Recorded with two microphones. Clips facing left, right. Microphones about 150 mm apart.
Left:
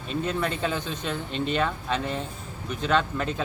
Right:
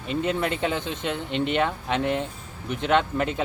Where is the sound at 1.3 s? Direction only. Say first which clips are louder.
Right 4 dB; 70° right (ahead or behind).